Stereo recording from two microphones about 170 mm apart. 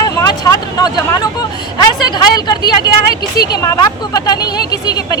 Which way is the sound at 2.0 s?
25° left (ahead or behind).